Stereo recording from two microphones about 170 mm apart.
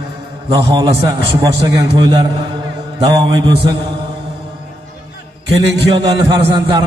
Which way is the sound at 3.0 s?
25° right (ahead or behind).